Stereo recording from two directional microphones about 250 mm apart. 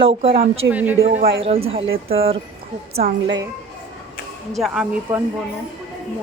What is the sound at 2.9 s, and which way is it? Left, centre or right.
Speech, right.